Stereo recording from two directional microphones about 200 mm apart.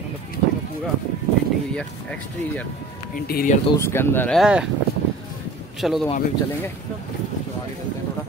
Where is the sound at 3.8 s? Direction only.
10° left (ahead or behind); by 4.7 s 5° right (ahead or behind).